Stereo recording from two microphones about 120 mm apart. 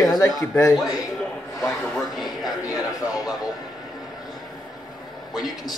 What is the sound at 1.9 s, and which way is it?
Speech, centre (ahead or behind).